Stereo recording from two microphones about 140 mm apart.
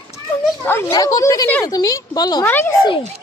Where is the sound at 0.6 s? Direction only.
15° left (ahead or behind).